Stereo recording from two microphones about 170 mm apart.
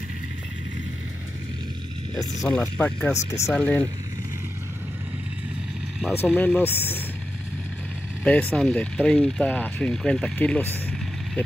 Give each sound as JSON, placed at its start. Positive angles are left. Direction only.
{"t": 2.5, "sound": "speech", "side_deg": 10}
{"t": 6.3, "sound": "speech", "side_deg": 10}
{"t": 8.2, "sound": "speech", "side_deg": 10}